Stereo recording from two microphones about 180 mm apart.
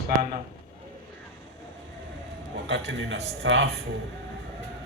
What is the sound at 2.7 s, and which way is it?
Speech, 85° right.